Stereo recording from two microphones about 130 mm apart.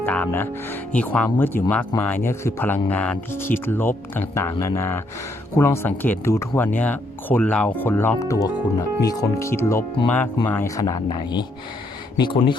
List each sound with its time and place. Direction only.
0.0 s speech: 15° left (ahead or behind)
10.8 s speech: 30° left (ahead or behind)